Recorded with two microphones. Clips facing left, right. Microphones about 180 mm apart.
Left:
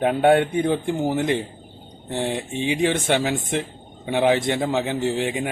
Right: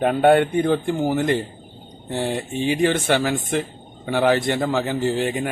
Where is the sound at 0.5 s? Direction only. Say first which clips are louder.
Right 2 dB; 15° left (ahead or behind).